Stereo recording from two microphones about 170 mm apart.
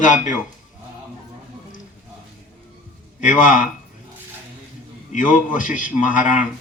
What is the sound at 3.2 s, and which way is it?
Speech, 50° left (ahead or behind).